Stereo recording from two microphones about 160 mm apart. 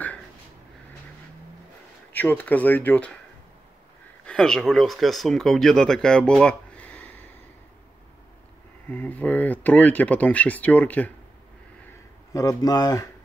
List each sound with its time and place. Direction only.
2.1 s speech: 10° left (ahead or behind)
4.3 s speech: 5° left (ahead or behind)
8.8 s speech: 10° left (ahead or behind)
12.3 s speech: 20° left (ahead or behind)